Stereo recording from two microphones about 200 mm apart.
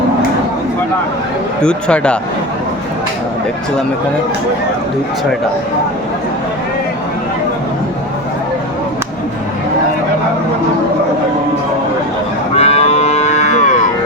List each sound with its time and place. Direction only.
1.6 s speech: 5° left (ahead or behind)
12.5 s livestock: 30° left (ahead or behind)